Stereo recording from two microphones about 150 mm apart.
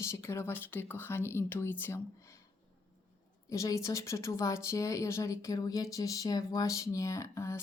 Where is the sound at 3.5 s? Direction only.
20° left (ahead or behind).